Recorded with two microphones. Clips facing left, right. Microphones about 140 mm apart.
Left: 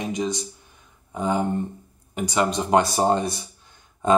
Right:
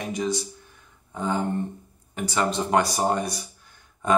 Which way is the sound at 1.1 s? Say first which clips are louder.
Left 3 dB; 15° left (ahead or behind).